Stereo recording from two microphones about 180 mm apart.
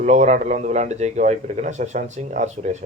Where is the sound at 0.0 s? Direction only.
40° right (ahead or behind).